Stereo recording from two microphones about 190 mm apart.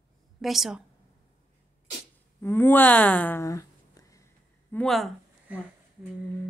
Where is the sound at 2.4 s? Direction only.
10° left (ahead or behind).